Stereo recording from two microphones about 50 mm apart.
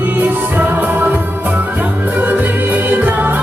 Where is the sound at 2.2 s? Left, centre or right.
Right.